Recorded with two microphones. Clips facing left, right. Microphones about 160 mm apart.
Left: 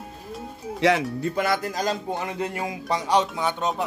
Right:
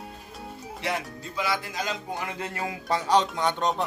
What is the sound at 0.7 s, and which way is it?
Speech, 90° left.